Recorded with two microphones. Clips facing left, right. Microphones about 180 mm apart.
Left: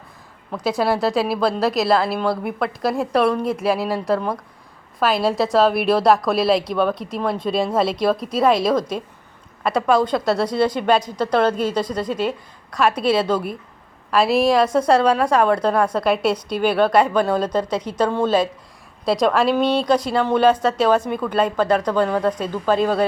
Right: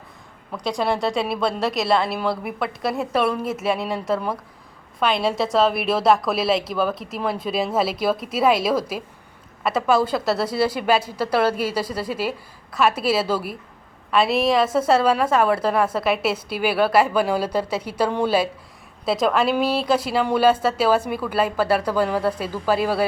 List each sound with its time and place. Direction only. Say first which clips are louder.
0.5 s a woman's voice: left 3 dB; 5° left (ahead or behind)